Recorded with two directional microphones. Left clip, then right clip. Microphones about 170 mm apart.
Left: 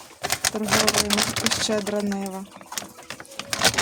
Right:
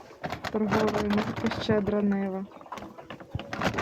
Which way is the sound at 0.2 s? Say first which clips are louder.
Left 5 dB; 20° left (ahead or behind).